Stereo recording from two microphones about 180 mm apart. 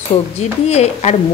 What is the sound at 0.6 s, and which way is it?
Speech, 35° left (ahead or behind).